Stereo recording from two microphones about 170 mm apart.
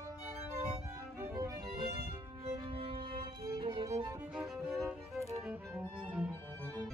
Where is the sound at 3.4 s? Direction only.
25° right (ahead or behind).